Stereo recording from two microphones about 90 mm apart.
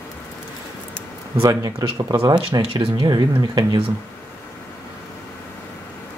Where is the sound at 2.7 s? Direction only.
65° right (ahead or behind).